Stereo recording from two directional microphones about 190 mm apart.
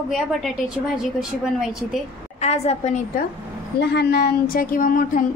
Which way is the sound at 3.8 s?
60° left (ahead or behind).